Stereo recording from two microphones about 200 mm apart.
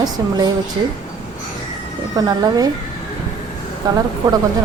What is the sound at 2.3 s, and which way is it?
Speech, 20° right (ahead or behind).